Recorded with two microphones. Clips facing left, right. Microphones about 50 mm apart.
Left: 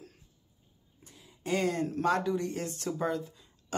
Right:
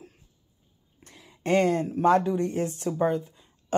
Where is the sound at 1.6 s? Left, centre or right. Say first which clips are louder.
Right 6 dB; right.